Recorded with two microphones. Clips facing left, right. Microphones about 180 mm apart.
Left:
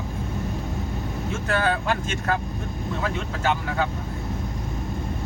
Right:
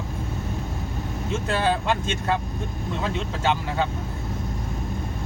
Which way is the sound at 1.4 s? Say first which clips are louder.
Even; 25° right (ahead or behind).